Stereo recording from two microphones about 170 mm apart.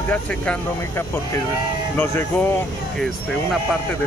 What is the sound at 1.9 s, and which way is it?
Speech, 10° left (ahead or behind).